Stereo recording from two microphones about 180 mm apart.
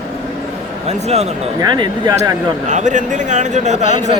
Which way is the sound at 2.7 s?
45° right (ahead or behind).